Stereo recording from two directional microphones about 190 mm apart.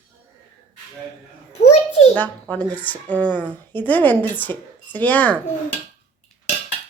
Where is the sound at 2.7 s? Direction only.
10° left (ahead or behind).